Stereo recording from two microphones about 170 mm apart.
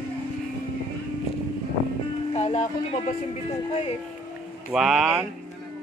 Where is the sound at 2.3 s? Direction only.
40° left (ahead or behind).